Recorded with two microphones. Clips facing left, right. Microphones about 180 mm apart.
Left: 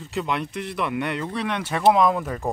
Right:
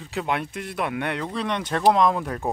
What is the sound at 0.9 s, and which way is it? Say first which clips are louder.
Speech: left 1 dB; 55° right (ahead or behind).